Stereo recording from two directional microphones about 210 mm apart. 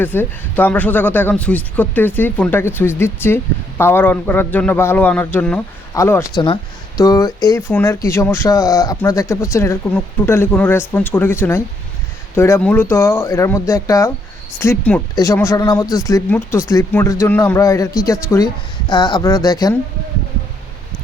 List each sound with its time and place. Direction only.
0.0 s speech: 10° left (ahead or behind)